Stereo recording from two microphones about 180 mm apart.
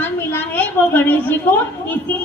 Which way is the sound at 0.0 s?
10° left (ahead or behind).